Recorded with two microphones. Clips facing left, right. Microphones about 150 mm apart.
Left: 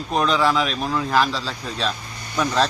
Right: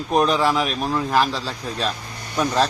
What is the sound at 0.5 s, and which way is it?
A man's voice, 10° right (ahead or behind).